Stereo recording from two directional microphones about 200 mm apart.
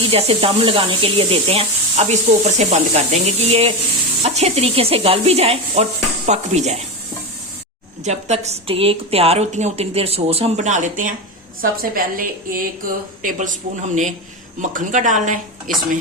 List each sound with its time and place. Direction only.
0.1 s speech: 30° right (ahead or behind)
8.0 s a woman's voice: 35° right (ahead or behind)
14.6 s speech: 40° right (ahead or behind)